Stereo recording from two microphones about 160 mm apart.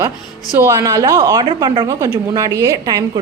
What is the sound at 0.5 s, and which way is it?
A woman's voice, 15° right (ahead or behind).